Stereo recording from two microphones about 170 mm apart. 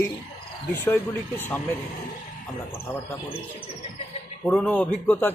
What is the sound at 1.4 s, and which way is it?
Speech, 10° left (ahead or behind).